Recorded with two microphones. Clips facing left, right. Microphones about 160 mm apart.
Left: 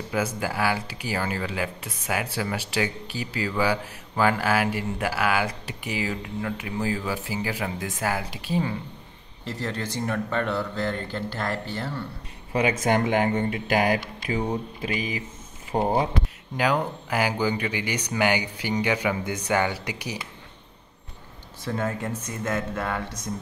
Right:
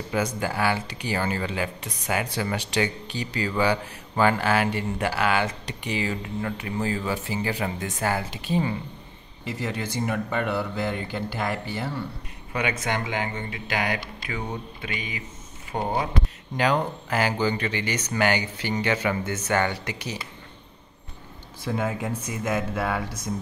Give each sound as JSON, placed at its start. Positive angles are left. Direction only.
{"t": 0.1, "sound": "speech", "side_deg": 5}
{"t": 12.5, "sound": "speech", "side_deg": 35}
{"t": 16.5, "sound": "speech", "side_deg": 5}
{"t": 21.6, "sound": "speech", "side_deg": -10}